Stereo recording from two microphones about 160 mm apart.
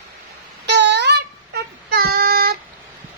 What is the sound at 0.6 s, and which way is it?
Child singing, 90° right.